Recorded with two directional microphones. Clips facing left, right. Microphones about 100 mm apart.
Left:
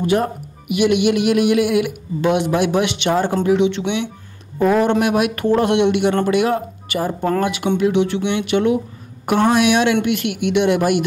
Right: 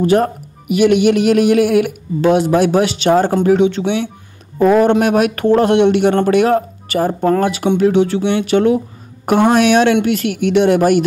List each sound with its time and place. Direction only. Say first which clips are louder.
0.0 s a man's voice: right 5 dB; 40° right (ahead or behind)